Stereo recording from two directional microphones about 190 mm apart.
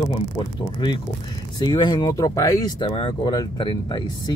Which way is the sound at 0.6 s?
25° left (ahead or behind).